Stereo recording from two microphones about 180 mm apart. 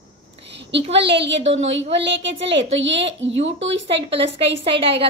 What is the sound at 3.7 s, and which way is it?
Speech, 75° right (ahead or behind).